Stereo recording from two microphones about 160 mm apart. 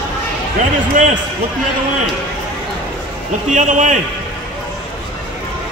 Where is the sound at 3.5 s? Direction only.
50° right (ahead or behind).